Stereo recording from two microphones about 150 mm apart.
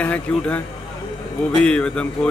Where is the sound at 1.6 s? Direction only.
5° left (ahead or behind).